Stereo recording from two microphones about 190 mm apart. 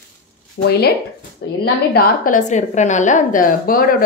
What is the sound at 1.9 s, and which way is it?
A woman's voice, 45° left (ahead or behind).